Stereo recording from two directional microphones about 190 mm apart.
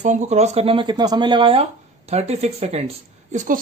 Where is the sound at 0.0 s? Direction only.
40° right (ahead or behind).